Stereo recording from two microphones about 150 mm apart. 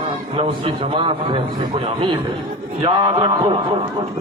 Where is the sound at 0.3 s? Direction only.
35° right (ahead or behind).